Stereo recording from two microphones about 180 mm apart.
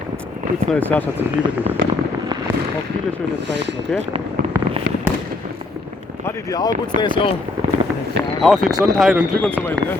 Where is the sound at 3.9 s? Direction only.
5° left (ahead or behind).